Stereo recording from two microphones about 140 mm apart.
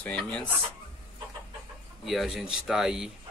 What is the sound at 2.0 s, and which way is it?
A man's voice, centre (ahead or behind).